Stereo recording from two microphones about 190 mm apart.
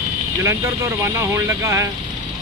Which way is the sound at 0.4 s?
15° right (ahead or behind).